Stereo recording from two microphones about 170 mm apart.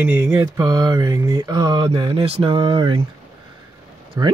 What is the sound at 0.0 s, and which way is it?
Mantra, 10° right (ahead or behind).